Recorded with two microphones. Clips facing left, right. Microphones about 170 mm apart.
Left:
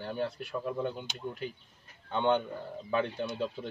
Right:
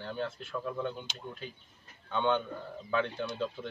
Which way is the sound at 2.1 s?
15° left (ahead or behind).